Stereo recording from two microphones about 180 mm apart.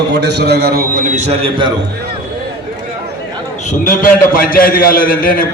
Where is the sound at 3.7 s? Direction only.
50° left (ahead or behind).